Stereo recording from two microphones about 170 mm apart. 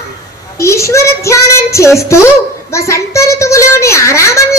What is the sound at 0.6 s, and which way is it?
A child's voice, 15° left (ahead or behind).